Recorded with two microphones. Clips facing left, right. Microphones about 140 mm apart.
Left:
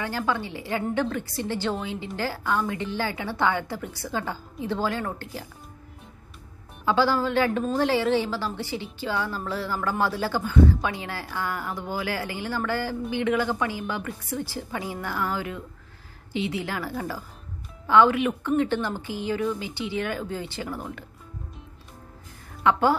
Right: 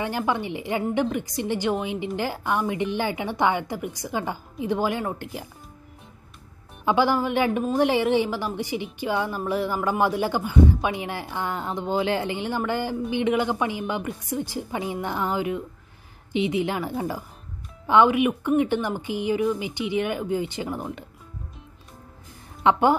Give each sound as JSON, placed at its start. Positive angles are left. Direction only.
{"t": 0.0, "sound": "a woman's voice", "side_deg": -20}
{"t": 6.9, "sound": "a woman's voice", "side_deg": -15}
{"t": 22.6, "sound": "a woman's voice", "side_deg": -20}